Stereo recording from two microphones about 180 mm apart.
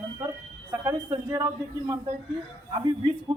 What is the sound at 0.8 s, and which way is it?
Speech, 20° right (ahead or behind).